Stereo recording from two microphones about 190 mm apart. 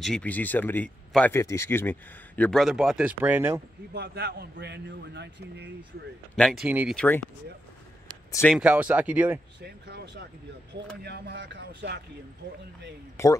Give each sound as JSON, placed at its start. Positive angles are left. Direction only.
{"t": 0.0, "sound": "speech", "side_deg": 5}
{"t": 3.9, "sound": "a man's voice", "side_deg": -60}
{"t": 6.6, "sound": "speech", "side_deg": -5}
{"t": 8.3, "sound": "speech", "side_deg": 15}
{"t": 8.5, "sound": "speech", "side_deg": -5}
{"t": 9.6, "sound": "a man's voice", "side_deg": -60}
{"t": 13.2, "sound": "speech", "side_deg": 15}